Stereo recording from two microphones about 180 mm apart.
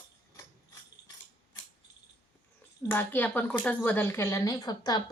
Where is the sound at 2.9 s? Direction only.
10° left (ahead or behind).